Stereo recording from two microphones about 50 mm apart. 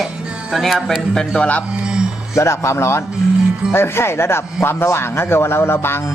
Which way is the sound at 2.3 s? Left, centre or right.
Left.